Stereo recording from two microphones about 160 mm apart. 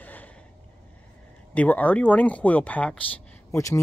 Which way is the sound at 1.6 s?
10° left (ahead or behind).